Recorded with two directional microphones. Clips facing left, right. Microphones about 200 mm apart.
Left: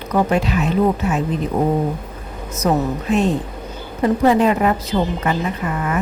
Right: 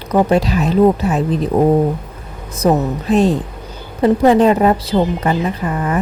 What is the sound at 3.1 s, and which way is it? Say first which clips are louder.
A woman's voice: right 5 dB; 35° right (ahead or behind).